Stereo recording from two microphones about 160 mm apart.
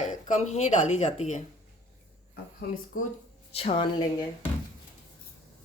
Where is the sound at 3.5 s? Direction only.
40° left (ahead or behind).